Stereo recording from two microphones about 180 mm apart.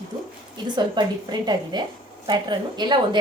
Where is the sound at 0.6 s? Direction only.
25° right (ahead or behind).